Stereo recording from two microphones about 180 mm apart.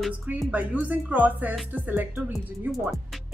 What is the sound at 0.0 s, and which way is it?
Speech, 5° right (ahead or behind).